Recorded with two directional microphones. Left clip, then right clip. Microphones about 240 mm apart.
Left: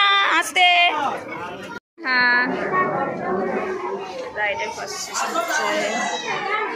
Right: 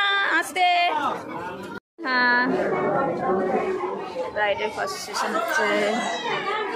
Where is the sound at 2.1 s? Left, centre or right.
Centre.